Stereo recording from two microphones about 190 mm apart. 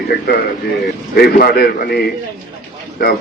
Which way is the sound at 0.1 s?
55° left (ahead or behind).